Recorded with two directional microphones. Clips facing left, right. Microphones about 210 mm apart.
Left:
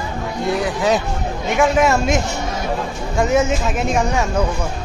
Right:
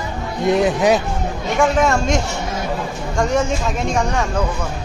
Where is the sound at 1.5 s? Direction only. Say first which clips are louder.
Left 1 dB; 5° left (ahead or behind).